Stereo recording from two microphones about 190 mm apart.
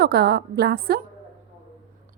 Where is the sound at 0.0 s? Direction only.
55° right (ahead or behind).